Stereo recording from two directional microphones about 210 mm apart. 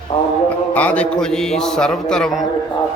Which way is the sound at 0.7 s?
5° left (ahead or behind).